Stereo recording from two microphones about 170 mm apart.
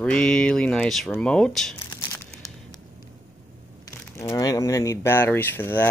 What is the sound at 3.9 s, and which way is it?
Speech, 15° left (ahead or behind).